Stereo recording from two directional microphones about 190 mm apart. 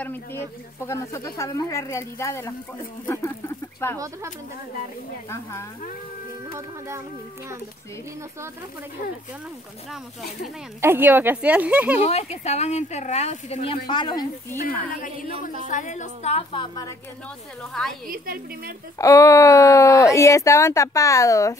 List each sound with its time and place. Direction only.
0.0 s speech: 10° left (ahead or behind)
5.3 s speech: 15° left (ahead or behind)
10.8 s speech: 10° right (ahead or behind)
12.0 s speech: 35° left (ahead or behind)
15.0 s speech: 45° left (ahead or behind)
18.0 s a woman's voice: 50° right (ahead or behind)
18.9 s speech: 15° left (ahead or behind)